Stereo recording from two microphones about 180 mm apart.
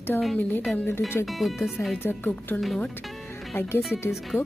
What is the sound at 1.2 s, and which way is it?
Speech, centre (ahead or behind).